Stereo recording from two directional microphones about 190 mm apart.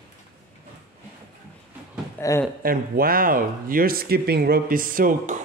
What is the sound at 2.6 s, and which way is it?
Speech, 50° right (ahead or behind).